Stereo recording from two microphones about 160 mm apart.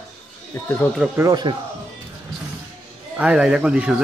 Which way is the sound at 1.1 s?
20° right (ahead or behind).